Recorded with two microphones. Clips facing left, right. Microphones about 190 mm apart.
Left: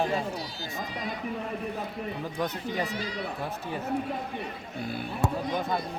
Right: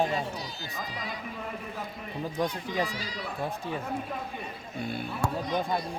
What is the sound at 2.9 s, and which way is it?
Speech, 55° left (ahead or behind).